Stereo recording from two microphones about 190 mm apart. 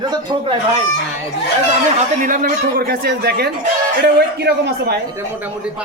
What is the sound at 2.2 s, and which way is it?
A man's voice, 45° right (ahead or behind).